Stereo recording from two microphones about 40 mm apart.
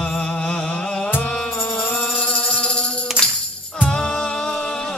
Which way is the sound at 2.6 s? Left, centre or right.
Left.